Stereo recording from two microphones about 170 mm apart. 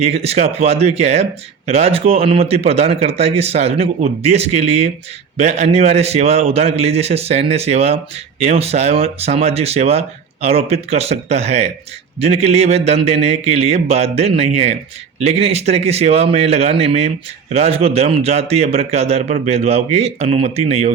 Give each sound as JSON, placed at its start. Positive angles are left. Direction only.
{"t": 0.0, "sound": "speech", "side_deg": -40}